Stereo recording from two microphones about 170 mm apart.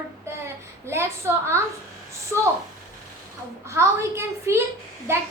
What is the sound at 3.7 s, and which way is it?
Speech, 15° right (ahead or behind).